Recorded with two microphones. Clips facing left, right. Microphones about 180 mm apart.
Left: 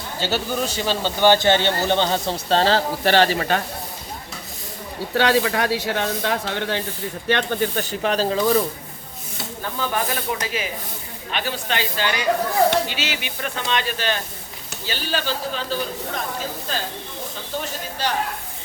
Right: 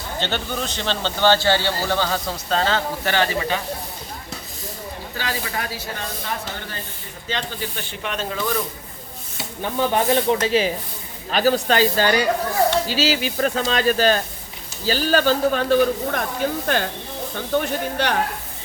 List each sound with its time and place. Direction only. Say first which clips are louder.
0.2 s speech: left 3 dB; 5° left (ahead or behind); by 3.2 s 30° left (ahead or behind)
3.3 s speech: left 2 dB; 55° left (ahead or behind)
5.1 s speech: left 10 dB; 75° left (ahead or behind)
7.3 s speech: left 7 dB; 60° left (ahead or behind); by 8.5 s 30° left (ahead or behind)
9.7 s speech: right 7 dB; 25° right (ahead or behind); by 18.1 s 65° right (ahead or behind)